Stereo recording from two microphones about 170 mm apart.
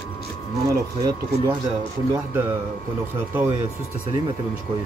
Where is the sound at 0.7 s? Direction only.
25° right (ahead or behind).